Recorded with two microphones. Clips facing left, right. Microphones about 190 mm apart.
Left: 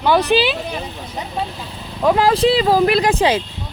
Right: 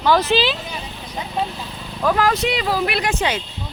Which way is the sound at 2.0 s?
25° left (ahead or behind).